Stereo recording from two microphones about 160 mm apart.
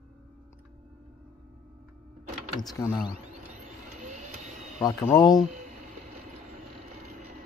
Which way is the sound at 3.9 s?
50° right (ahead or behind).